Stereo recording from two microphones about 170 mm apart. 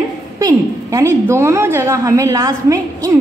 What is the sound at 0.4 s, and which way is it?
A woman's voice, 20° right (ahead or behind).